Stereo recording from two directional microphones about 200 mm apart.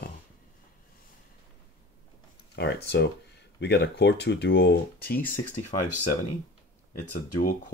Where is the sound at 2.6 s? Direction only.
55° left (ahead or behind).